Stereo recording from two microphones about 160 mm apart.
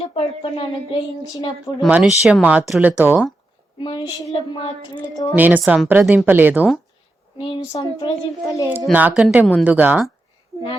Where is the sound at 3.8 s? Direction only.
25° left (ahead or behind).